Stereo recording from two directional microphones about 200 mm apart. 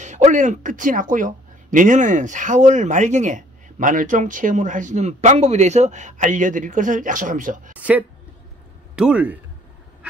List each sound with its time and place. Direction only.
0.0 s speech: 35° right (ahead or behind)
8.9 s speech: 5° right (ahead or behind)